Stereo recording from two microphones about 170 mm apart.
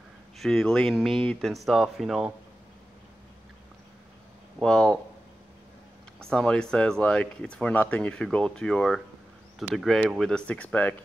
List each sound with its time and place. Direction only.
0.4 s speech: 5° left (ahead or behind)
4.6 s speech: 5° left (ahead or behind)
6.2 s speech: 5° left (ahead or behind)